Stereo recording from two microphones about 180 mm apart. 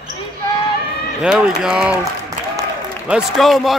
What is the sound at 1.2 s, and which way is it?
Speech, 5° right (ahead or behind).